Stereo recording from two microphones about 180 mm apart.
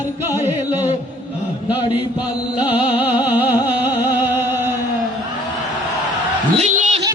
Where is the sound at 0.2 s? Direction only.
10° right (ahead or behind).